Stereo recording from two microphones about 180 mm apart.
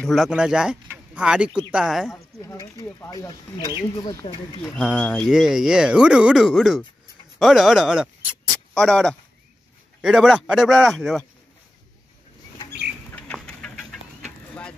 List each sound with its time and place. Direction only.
0.0 s speech: centre (ahead or behind)
2.1 s speech: 20° left (ahead or behind)
4.9 s speech: 5° left (ahead or behind)
8.7 s speech: 5° left (ahead or behind)
13.1 s duck: 5° left (ahead or behind)
14.5 s a sound: 5° left (ahead or behind)